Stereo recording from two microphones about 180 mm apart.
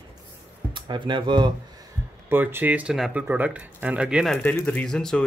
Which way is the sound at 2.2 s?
10° right (ahead or behind).